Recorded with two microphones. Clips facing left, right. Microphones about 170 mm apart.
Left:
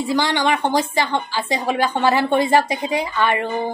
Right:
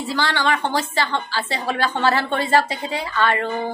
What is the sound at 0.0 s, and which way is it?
A woman's voice, 15° left (ahead or behind).